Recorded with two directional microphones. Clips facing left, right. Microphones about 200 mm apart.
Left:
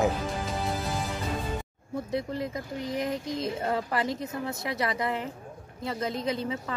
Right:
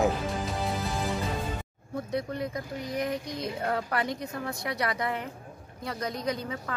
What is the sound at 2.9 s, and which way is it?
Speech, 25° left (ahead or behind).